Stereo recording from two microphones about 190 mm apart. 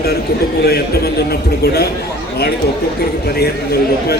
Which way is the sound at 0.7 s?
55° left (ahead or behind).